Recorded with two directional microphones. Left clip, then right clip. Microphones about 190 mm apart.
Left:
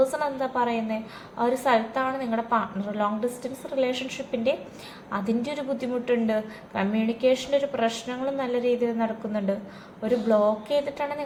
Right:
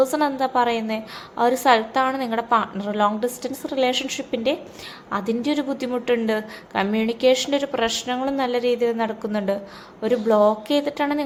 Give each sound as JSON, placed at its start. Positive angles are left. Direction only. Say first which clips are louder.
{"t": 0.1, "sound": "a woman's voice", "louder": "right 6 dB", "side_deg": -45}